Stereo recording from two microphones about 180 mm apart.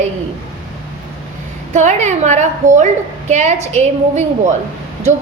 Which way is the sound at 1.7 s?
40° right (ahead or behind).